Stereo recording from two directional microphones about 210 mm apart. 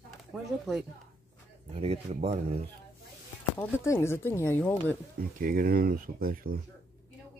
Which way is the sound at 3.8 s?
10° left (ahead or behind).